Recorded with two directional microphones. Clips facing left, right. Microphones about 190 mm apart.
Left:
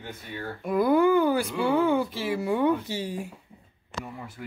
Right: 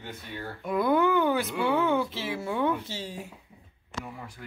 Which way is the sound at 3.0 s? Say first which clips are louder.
Left 5 dB; 55° left (ahead or behind).